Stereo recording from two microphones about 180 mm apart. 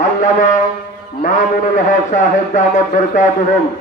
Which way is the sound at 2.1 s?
45° left (ahead or behind).